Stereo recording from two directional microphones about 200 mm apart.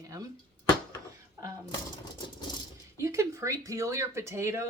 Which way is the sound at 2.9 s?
15° right (ahead or behind).